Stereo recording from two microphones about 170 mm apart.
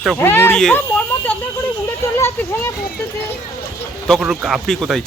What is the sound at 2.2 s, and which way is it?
Speech, 15° left (ahead or behind).